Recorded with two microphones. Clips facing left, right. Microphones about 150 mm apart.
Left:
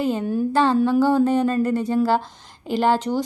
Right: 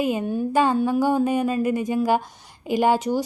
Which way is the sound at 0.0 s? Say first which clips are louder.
Left 1 dB; 10° right (ahead or behind).